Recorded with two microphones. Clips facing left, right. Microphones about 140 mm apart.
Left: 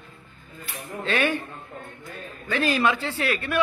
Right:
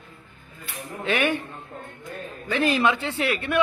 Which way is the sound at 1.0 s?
20° right (ahead or behind).